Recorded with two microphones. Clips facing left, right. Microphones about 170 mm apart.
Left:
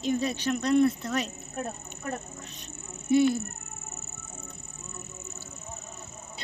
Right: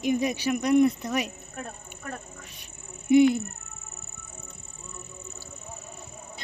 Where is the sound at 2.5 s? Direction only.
10° right (ahead or behind).